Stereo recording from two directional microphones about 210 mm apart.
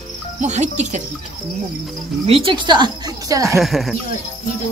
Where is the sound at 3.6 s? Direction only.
Centre (ahead or behind).